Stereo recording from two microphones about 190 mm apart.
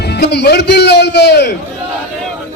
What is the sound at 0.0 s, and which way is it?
A man's voice, 60° left (ahead or behind).